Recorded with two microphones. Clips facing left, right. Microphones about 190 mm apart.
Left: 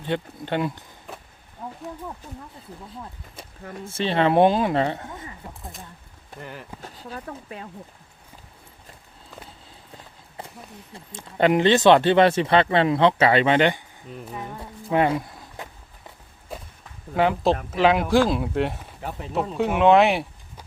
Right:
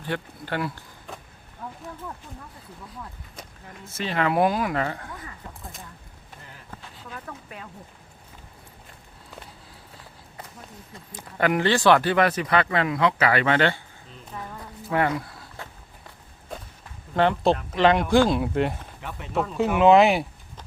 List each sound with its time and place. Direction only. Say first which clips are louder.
0.0 s speech: left 4 dB; 20° left (ahead or behind)
2.9 s speech: left 2 dB; 25° left (ahead or behind)
6.4 s speech: left 13 dB; 70° left (ahead or behind)
6.8 s speech: left 3 dB; 35° left (ahead or behind)
10.9 s speech: left 4 dB; 30° left (ahead or behind)
14.3 s walk: right 1 dB; 20° left (ahead or behind)
16.5 s walk: left 1 dB; 5° left (ahead or behind)
17.2 s speech: even; 5° left (ahead or behind)